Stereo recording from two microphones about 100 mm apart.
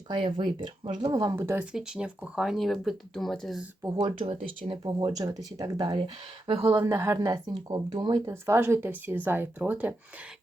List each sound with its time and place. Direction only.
0.1 s speech: 55° right (ahead or behind)
1.1 s speech: 40° right (ahead or behind)
1.4 s speech: 25° right (ahead or behind)
1.7 s speech: 10° right (ahead or behind)
4.8 s speech: 45° right (ahead or behind)
6.5 s speech: 85° right
6.8 s speech: 25° right (ahead or behind)
7.2 s speech: 40° right (ahead or behind)
8.2 s speech: 25° right (ahead or behind)